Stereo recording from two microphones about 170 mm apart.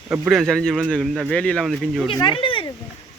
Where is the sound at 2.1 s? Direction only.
30° left (ahead or behind).